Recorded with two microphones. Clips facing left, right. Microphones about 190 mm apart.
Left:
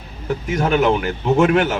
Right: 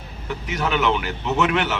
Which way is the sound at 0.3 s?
45° left (ahead or behind).